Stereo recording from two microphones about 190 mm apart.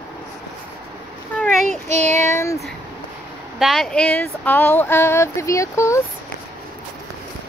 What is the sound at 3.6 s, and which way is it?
Speech, centre (ahead or behind).